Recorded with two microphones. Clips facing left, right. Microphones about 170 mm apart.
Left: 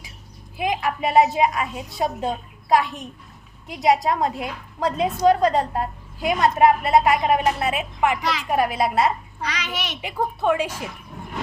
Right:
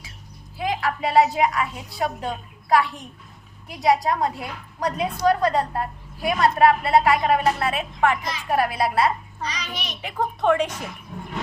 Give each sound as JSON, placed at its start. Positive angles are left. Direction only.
{"t": 0.6, "sound": "a woman's voice", "side_deg": 15}
{"t": 8.2, "sound": "a child's voice", "side_deg": 80}
{"t": 8.4, "sound": "a woman's voice", "side_deg": 20}
{"t": 9.5, "sound": "a child's voice", "side_deg": 80}
{"t": 10.0, "sound": "a woman's voice", "side_deg": 10}